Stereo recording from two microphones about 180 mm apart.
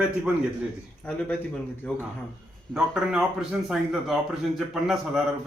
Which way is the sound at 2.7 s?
5° right (ahead or behind).